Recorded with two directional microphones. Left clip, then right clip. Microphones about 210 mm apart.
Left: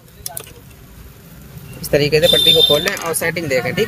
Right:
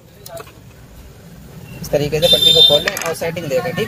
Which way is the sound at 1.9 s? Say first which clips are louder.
Left 1 dB; 40° left (ahead or behind).